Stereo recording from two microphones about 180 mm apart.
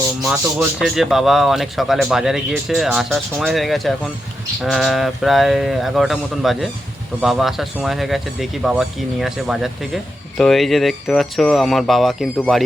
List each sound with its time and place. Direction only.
0.8 s speech: centre (ahead or behind)